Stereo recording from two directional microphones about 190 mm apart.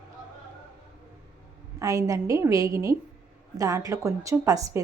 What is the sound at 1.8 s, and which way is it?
A woman's voice, 15° right (ahead or behind).